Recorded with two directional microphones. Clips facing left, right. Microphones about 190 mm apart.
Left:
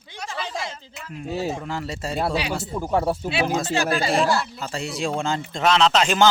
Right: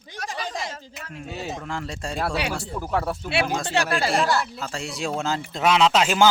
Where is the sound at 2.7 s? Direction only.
20° left (ahead or behind).